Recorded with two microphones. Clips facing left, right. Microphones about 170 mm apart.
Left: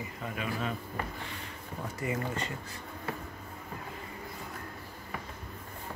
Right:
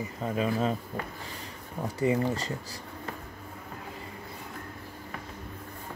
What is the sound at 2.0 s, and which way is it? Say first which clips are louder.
Speech: right 8 dB; 30° right (ahead or behind).